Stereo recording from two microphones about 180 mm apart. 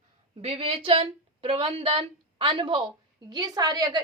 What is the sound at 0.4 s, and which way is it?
A woman's voice, 30° right (ahead or behind).